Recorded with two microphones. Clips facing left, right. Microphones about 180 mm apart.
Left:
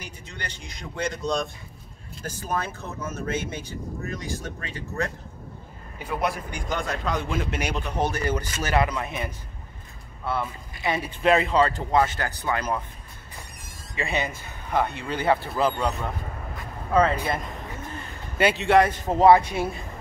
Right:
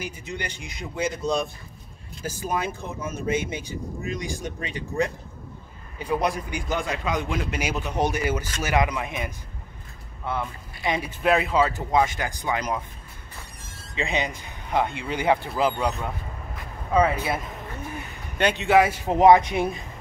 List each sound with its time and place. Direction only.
0.0 s speech: 10° right (ahead or behind)
6.7 s a man's voice: 5° right (ahead or behind)
10.9 s speech: 10° right (ahead or behind)
13.9 s speech: 15° right (ahead or behind)
18.4 s speech: 5° left (ahead or behind); by 19.8 s 20° right (ahead or behind)